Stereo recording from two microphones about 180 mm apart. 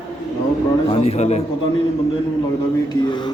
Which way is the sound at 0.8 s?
30° left (ahead or behind).